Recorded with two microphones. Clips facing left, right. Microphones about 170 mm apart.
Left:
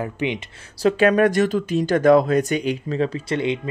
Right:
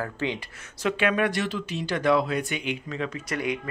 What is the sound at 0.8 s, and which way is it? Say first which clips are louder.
Speech: left 8 dB; 40° left (ahead or behind).